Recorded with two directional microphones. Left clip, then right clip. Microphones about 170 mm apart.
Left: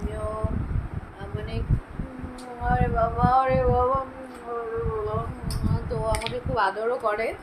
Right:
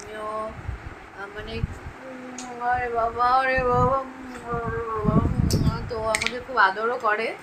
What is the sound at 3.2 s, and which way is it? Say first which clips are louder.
Speech: right 1 dB; 5° right (ahead or behind).